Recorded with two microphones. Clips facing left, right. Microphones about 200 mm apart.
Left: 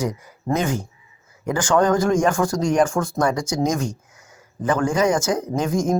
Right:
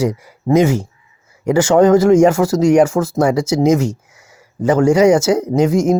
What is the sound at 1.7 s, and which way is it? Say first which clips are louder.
Speech: right 7 dB; 25° right (ahead or behind).